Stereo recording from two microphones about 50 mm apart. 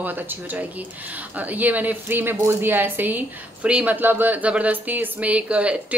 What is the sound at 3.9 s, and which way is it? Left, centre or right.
Speech, right.